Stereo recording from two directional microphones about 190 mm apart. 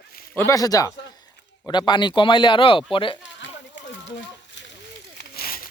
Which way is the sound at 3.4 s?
70° left (ahead or behind).